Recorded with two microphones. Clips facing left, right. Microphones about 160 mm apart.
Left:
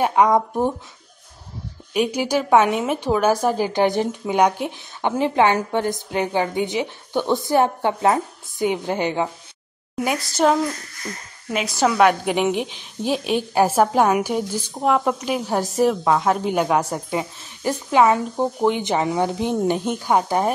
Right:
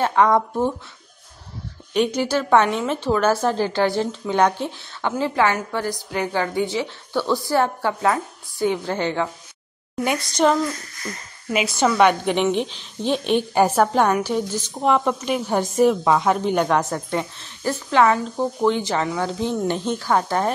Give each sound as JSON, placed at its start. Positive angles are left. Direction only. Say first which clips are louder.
{"t": 0.0, "sound": "a woman's voice", "louder": "left 1 dB", "side_deg": 15}
{"t": 2.0, "sound": "a woman's voice", "louder": "even", "side_deg": 10}
{"t": 10.0, "sound": "a woman's voice", "louder": "even", "side_deg": 5}
{"t": 14.7, "sound": "a woman's voice", "louder": "even", "side_deg": 0}